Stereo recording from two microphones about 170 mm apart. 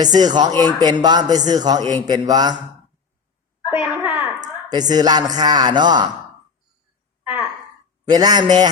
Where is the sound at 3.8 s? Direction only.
10° right (ahead or behind).